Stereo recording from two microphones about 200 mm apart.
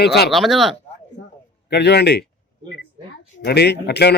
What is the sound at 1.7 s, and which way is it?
Speech, 55° left (ahead or behind).